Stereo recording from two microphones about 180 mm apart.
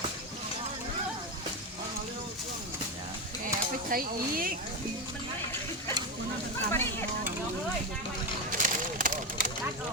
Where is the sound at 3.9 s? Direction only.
50° right (ahead or behind).